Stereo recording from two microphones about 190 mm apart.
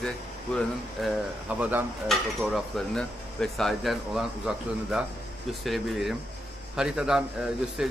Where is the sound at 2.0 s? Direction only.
Centre (ahead or behind).